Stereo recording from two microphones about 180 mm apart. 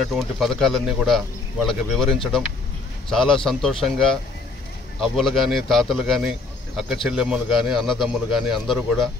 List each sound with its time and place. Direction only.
0.0 s speech: centre (ahead or behind)